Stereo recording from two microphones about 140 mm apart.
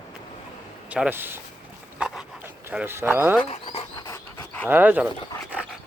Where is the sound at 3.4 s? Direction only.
45° left (ahead or behind).